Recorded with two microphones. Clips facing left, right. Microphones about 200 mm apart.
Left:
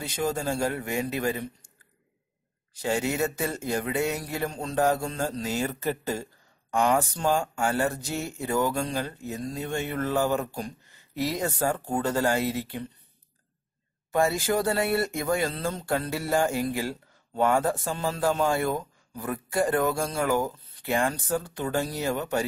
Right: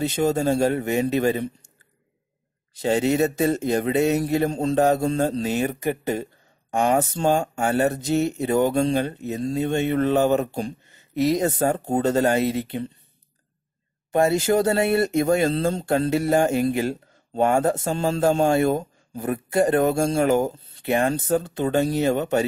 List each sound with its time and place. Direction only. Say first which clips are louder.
0.0 s speech: right 7 dB; 25° right (ahead or behind)
2.7 s speech: right 7 dB; 20° right (ahead or behind)
14.1 s speech: right 5 dB; 20° right (ahead or behind)